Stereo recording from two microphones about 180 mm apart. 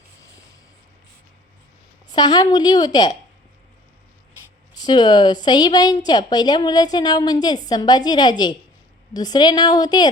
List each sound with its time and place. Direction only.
2.0 s a woman's voice: 25° left (ahead or behind)
4.7 s a woman's voice: 25° left (ahead or behind)